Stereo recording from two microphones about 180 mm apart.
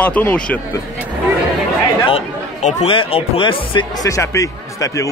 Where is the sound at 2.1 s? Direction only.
35° left (ahead or behind); by 5.0 s 15° left (ahead or behind).